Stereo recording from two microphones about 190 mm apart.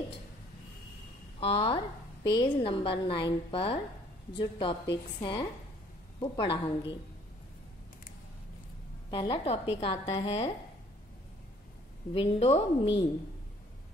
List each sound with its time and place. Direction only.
1.4 s a woman's voice: 30° left (ahead or behind)
9.1 s a woman's voice: 25° left (ahead or behind)
12.1 s a woman's voice: 30° left (ahead or behind)